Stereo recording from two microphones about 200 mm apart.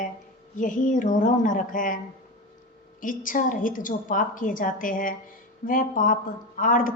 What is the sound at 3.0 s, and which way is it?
A woman's voice, 40° left (ahead or behind).